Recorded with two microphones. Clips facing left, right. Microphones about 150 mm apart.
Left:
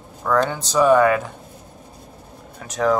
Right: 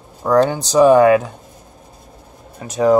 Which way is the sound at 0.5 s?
35° right (ahead or behind).